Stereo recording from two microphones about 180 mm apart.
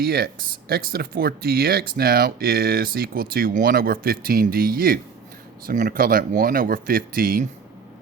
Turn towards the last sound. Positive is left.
turn(degrees=-55)  # may be behind; listen again after turning